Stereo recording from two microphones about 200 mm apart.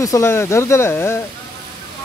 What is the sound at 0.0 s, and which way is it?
Speech, 15° left (ahead or behind).